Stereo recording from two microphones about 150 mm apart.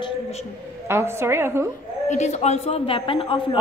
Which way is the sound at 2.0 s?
50° left (ahead or behind).